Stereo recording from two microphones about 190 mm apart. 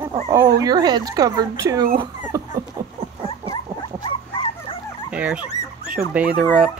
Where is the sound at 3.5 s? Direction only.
25° left (ahead or behind).